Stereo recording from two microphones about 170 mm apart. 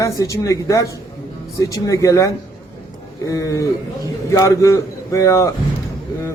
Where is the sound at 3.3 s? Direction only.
20° left (ahead or behind).